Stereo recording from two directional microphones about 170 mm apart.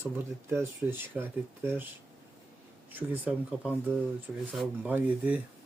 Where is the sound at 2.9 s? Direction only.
10° right (ahead or behind).